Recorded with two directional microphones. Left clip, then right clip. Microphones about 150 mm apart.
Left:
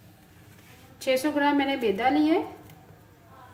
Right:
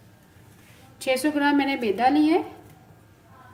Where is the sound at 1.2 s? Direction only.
55° right (ahead or behind).